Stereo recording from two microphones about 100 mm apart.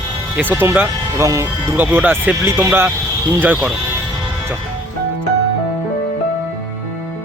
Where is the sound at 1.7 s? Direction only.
20° right (ahead or behind).